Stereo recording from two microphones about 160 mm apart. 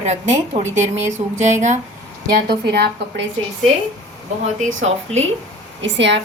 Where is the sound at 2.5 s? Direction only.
90° right.